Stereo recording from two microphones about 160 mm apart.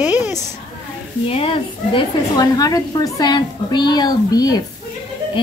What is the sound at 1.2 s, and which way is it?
A woman's voice, 35° left (ahead or behind).